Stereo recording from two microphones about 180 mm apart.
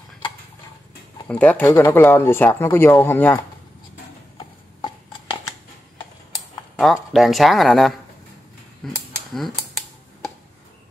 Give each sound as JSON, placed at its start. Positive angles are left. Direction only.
{"t": 1.2, "sound": "speech", "side_deg": 10}
{"t": 4.8, "sound": "a sound", "side_deg": 25}
{"t": 6.8, "sound": "speech", "side_deg": 0}
{"t": 9.3, "sound": "computer keyboard", "side_deg": 0}